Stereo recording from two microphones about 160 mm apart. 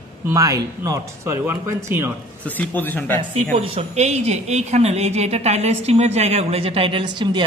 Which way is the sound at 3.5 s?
40° right (ahead or behind).